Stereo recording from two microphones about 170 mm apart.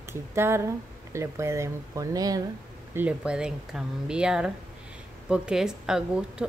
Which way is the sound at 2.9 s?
10° right (ahead or behind).